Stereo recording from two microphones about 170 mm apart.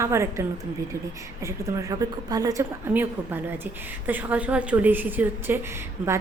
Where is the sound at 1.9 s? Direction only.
20° right (ahead or behind).